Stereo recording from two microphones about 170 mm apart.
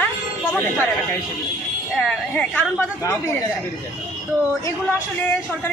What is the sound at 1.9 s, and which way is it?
Speech, 10° left (ahead or behind).